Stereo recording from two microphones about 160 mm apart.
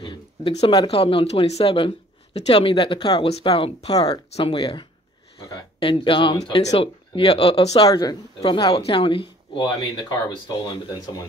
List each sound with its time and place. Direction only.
0.0 s speech: 30° left (ahead or behind)
4.4 s speech: 35° left (ahead or behind)
7.7 s speech: 25° left (ahead or behind)